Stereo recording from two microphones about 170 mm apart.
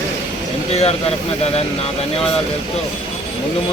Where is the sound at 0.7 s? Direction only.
40° left (ahead or behind).